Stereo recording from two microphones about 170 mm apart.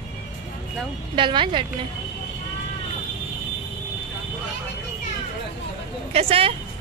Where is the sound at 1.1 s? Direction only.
30° right (ahead or behind).